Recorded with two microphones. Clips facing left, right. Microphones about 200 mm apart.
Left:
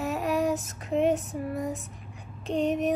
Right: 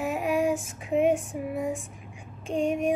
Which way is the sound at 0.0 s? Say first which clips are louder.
Right 1 dB; 10° right (ahead or behind).